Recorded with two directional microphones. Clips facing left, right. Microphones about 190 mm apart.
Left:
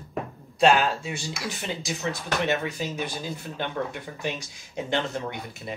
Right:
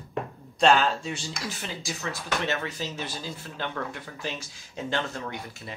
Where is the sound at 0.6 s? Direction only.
10° left (ahead or behind).